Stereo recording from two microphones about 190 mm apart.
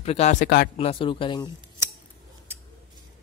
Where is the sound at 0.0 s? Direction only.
35° left (ahead or behind).